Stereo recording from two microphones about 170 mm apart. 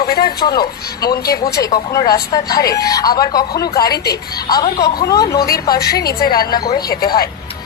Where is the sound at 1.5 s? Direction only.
20° left (ahead or behind).